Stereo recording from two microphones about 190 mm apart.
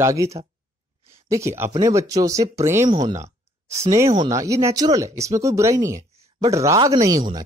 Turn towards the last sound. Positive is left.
turn(degrees=-20)  # may be behind; listen again after turning